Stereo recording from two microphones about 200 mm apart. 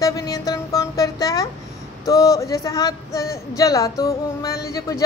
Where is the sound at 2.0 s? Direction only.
15° left (ahead or behind).